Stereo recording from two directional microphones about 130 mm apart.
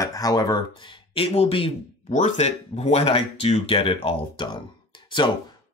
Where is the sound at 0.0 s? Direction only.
30° left (ahead or behind); by 1.7 s 50° left (ahead or behind).